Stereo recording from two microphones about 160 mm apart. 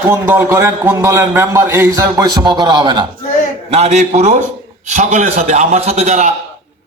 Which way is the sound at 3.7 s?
45° right (ahead or behind).